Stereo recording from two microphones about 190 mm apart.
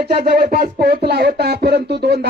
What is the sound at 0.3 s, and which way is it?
Speech, 50° right (ahead or behind).